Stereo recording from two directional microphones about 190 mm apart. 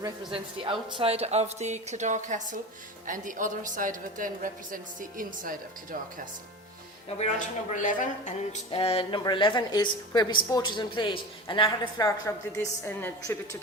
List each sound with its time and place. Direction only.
0.0 s a woman's voice: 25° right (ahead or behind); by 5.5 s 45° right (ahead or behind)
7.2 s speech: 40° left (ahead or behind)
8.7 s a woman's voice: 30° left (ahead or behind)
12.0 s a woman's voice: 15° left (ahead or behind)